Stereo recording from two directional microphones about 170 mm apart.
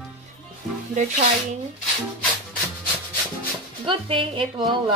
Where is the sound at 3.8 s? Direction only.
30° right (ahead or behind).